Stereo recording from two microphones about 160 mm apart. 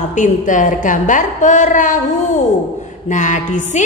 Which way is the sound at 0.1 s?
55° left (ahead or behind).